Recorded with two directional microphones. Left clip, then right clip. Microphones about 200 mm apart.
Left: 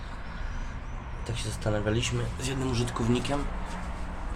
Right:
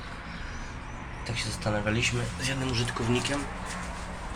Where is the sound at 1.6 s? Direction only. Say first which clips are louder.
Right 1 dB; 35° left (ahead or behind).